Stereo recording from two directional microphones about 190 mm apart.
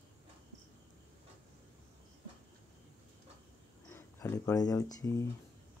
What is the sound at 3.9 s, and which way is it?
Speech, 15° left (ahead or behind).